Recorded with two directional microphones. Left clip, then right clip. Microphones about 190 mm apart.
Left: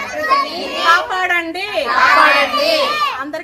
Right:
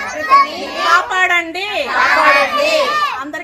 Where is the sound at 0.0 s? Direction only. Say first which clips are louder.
Right 4 dB; 55° left (ahead or behind).